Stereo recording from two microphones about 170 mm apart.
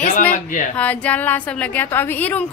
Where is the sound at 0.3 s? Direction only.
50° left (ahead or behind).